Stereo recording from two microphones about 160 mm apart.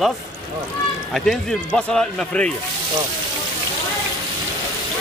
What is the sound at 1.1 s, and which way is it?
Speech, centre (ahead or behind).